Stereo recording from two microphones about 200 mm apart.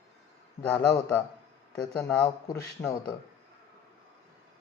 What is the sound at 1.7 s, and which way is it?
Speech, 5° left (ahead or behind).